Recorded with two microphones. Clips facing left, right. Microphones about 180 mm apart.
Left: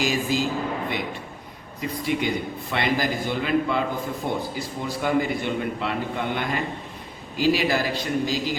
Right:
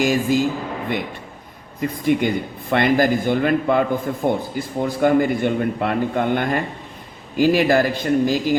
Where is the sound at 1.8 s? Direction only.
50° right (ahead or behind).